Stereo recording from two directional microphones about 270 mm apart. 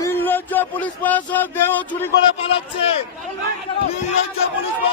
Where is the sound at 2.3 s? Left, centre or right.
Left.